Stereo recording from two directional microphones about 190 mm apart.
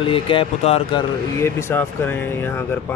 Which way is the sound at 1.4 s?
15° left (ahead or behind).